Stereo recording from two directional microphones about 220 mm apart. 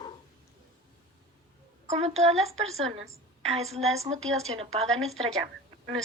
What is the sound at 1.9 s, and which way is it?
A woman's voice, 30° right (ahead or behind).